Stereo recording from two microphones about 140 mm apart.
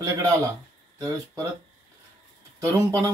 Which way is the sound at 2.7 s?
25° right (ahead or behind).